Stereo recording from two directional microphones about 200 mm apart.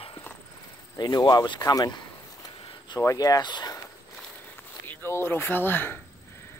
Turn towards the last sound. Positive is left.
turn(degrees=10)  # may be behind; listen again after turning